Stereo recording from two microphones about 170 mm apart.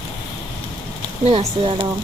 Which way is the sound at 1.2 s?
35° right (ahead or behind).